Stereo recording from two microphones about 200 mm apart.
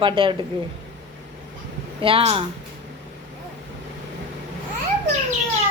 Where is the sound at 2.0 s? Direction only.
30° right (ahead or behind).